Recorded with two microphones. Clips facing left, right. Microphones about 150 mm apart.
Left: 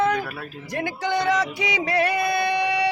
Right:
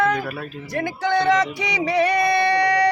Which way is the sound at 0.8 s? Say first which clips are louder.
Right 3 dB; 5° left (ahead or behind).